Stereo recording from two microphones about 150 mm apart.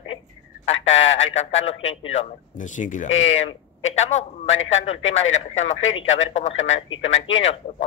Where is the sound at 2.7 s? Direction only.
55° left (ahead or behind).